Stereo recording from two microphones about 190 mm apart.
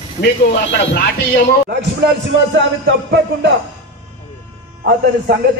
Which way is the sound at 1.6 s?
65° right (ahead or behind).